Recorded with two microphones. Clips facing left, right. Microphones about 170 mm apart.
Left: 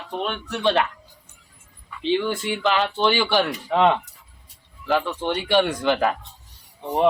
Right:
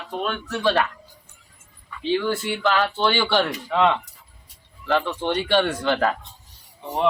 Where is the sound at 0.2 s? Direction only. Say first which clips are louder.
Right 1 dB; 20° left (ahead or behind).